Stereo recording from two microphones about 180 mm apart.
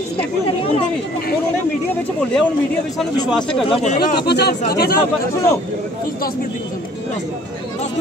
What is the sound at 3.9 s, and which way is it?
Speech, 65° left (ahead or behind).